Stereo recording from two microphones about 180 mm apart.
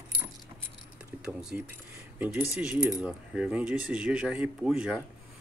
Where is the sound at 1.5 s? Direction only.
10° right (ahead or behind).